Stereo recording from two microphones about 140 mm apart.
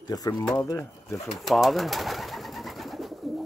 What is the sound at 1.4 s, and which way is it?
Bird, centre (ahead or behind).